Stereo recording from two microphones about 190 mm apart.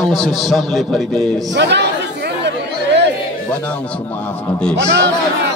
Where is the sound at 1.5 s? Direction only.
65° right (ahead or behind).